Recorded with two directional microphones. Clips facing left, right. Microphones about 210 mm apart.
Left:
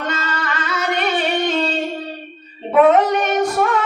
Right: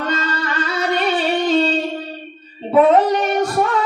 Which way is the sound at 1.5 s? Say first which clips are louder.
Right 4 dB; 35° right (ahead or behind).